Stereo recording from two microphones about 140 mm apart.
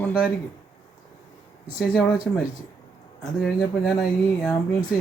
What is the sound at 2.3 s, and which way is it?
Speech, 10° left (ahead or behind).